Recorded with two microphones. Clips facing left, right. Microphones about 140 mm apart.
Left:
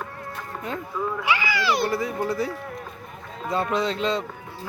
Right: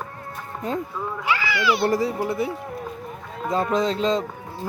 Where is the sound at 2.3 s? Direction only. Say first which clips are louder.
Right 1 dB; 25° right (ahead or behind).